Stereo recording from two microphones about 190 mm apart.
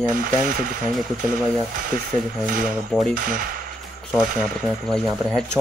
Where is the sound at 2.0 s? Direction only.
45° right (ahead or behind).